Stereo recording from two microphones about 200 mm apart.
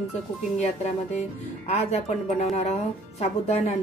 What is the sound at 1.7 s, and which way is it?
A woman's voice, 35° left (ahead or behind).